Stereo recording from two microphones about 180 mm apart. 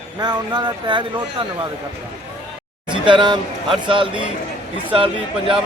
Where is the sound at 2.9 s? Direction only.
25° right (ahead or behind).